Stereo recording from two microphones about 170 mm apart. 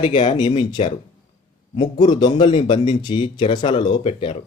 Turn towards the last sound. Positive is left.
turn(degrees=35)  # may be behind; listen again after turning